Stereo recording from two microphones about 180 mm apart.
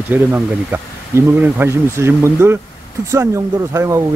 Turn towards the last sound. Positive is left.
turn(degrees=-15)  # may be behind; listen again after turning